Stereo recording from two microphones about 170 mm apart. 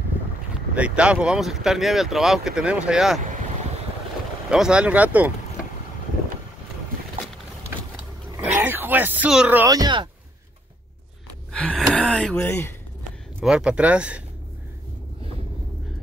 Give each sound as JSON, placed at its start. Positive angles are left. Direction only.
{"t": 0.6, "sound": "speech", "side_deg": -5}
{"t": 4.5, "sound": "speech", "side_deg": -5}
{"t": 8.5, "sound": "speech", "side_deg": -10}
{"t": 9.7, "sound": "speech", "side_deg": -25}
{"t": 11.5, "sound": "gasp", "side_deg": 5}
{"t": 12.4, "sound": "speech", "side_deg": 15}
{"t": 13.4, "sound": "speech", "side_deg": -5}